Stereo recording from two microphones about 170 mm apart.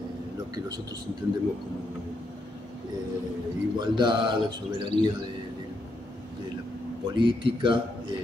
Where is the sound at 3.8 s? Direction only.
25° right (ahead or behind).